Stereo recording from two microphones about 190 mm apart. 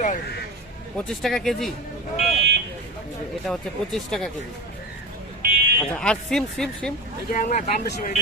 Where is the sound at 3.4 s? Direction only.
Centre (ahead or behind).